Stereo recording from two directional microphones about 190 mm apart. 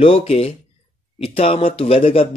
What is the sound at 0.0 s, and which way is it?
Speech, 30° left (ahead or behind).